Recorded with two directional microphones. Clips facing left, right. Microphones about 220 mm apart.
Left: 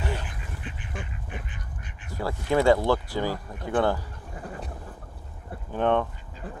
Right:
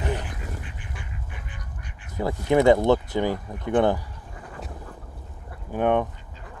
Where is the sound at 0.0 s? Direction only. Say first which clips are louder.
Right 3 dB; 20° right (ahead or behind).